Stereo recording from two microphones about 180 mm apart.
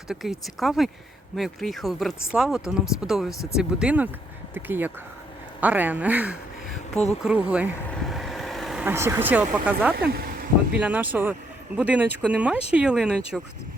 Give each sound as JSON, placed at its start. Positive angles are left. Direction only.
{"t": 0.1, "sound": "a woman's voice", "side_deg": 0}
{"t": 7.9, "sound": "vehicle", "side_deg": 0}
{"t": 10.1, "sound": "a sound", "side_deg": -55}
{"t": 10.8, "sound": "speech", "side_deg": -10}